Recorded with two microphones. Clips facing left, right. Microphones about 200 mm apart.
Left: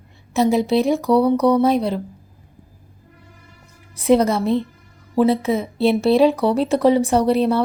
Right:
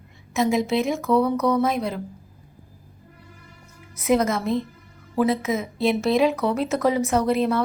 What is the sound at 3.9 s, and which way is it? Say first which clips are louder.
Speech: left 5 dB; 30° left (ahead or behind).